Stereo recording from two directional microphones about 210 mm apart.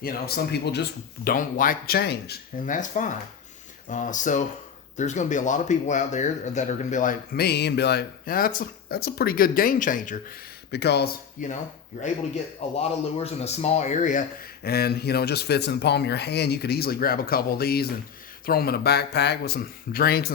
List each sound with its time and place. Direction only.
0.0 s speech: 45° left (ahead or behind)
10.7 s speech: 50° left (ahead or behind)
12.7 s speech: 30° left (ahead or behind); by 20.3 s 45° left (ahead or behind)